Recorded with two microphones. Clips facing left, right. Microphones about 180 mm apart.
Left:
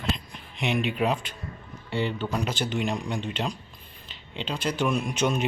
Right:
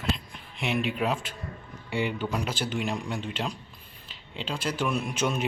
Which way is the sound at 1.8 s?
10° right (ahead or behind).